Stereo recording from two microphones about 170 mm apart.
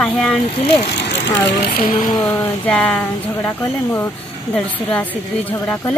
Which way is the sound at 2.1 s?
20° left (ahead or behind).